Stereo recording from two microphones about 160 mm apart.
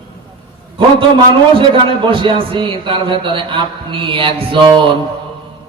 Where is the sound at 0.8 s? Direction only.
35° right (ahead or behind).